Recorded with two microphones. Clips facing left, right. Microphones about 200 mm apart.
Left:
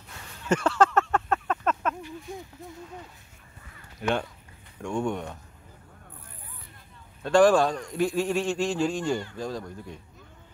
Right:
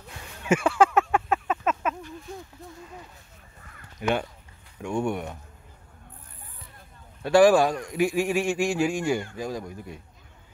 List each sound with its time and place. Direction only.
0.5 s a sound: 10° right (ahead or behind)
4.0 s a man's voice: 10° right (ahead or behind)
7.2 s a man's voice: 10° right (ahead or behind)